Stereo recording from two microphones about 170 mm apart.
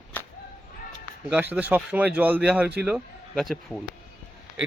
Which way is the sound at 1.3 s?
5° right (ahead or behind).